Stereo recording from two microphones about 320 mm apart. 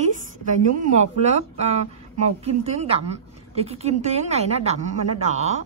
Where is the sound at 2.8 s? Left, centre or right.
Centre.